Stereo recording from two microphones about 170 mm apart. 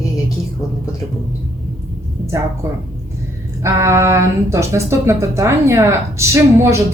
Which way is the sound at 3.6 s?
15° right (ahead or behind).